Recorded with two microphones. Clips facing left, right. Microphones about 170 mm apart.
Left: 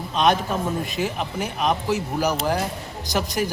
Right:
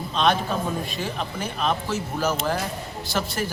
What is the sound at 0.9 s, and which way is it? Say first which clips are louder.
Speech: left 4 dB; 20° left (ahead or behind).